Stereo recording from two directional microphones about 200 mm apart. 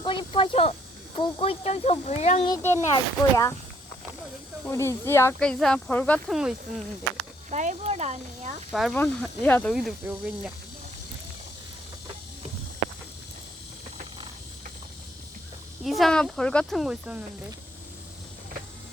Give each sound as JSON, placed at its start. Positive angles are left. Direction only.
{"t": 0.0, "sound": "speech", "side_deg": 25}
{"t": 2.5, "sound": "speech", "side_deg": 10}
{"t": 4.6, "sound": "speech", "side_deg": 15}
{"t": 7.5, "sound": "speech", "side_deg": -35}
{"t": 8.7, "sound": "speech", "side_deg": 0}
{"t": 9.7, "sound": "speech", "side_deg": -5}
{"t": 15.8, "sound": "speech", "side_deg": 0}